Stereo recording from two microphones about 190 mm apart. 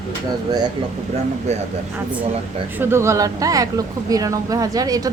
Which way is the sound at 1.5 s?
35° right (ahead or behind).